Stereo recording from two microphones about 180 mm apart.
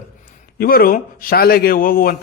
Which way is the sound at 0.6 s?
55° left (ahead or behind).